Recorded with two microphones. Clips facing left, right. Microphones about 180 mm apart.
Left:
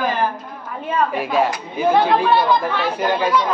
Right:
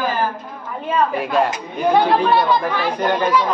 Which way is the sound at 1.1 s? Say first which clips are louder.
Even; centre (ahead or behind).